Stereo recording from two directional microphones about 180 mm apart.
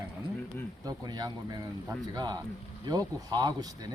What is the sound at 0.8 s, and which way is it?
Speech, 20° right (ahead or behind).